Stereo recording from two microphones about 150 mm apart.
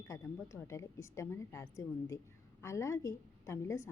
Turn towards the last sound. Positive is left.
turn(degrees=20)  # may be behind; listen again after turning